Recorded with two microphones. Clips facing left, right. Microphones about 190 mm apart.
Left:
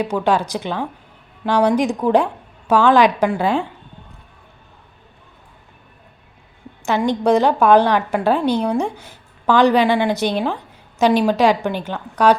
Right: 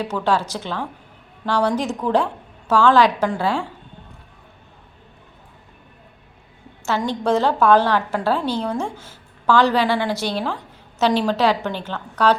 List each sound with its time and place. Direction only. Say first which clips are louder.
0.0 s a woman's voice: left 3 dB; 15° left (ahead or behind)
6.8 s a woman's voice: left 4 dB; 15° left (ahead or behind)